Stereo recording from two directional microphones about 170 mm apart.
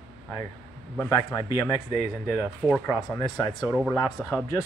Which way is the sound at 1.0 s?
15° left (ahead or behind).